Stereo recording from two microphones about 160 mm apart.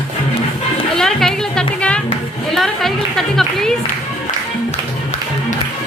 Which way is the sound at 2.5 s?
Centre (ahead or behind).